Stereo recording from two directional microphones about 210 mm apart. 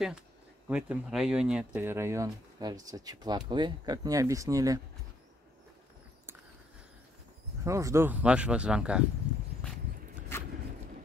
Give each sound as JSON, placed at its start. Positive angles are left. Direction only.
{"t": 0.7, "sound": "speech", "side_deg": -5}
{"t": 7.6, "sound": "speech", "side_deg": -15}